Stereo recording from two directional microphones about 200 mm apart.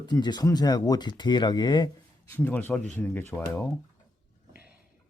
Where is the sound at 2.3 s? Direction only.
10° left (ahead or behind).